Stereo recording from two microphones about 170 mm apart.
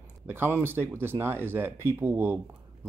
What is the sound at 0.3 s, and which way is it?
Speech, 10° right (ahead or behind).